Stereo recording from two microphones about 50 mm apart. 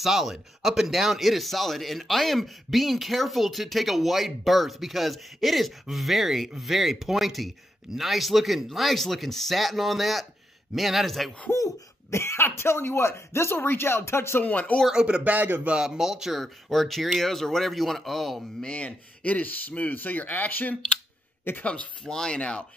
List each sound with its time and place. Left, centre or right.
0.0 s speech: centre
11.5 s cough: left
12.5 s speech: left
14.4 s speech: left
14.9 s speech: centre
15.3 s speech: right
15.7 s speech: centre
16.0 s speech: centre
16.7 s speech: centre
18.6 s speech: left
22.0 s speech: centre